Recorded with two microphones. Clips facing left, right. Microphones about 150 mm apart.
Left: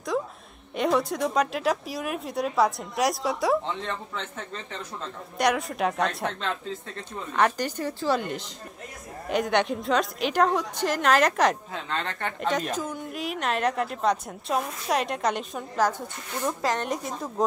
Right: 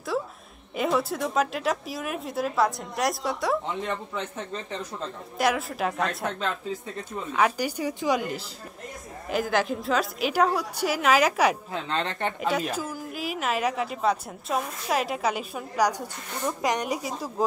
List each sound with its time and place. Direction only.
0.7 s a woman's voice: centre (ahead or behind)
3.8 s a woman's voice: 10° right (ahead or behind)
5.4 s a woman's voice: centre (ahead or behind)
11.9 s speech: 20° right (ahead or behind)
12.4 s a woman's voice: 5° right (ahead or behind)